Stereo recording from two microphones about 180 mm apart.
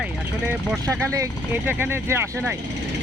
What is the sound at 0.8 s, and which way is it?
Speech, 15° right (ahead or behind).